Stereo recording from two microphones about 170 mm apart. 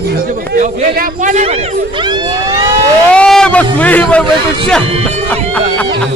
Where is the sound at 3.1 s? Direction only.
5° left (ahead or behind).